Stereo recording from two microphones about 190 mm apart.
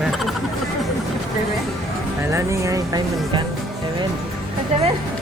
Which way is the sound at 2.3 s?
15° right (ahead or behind).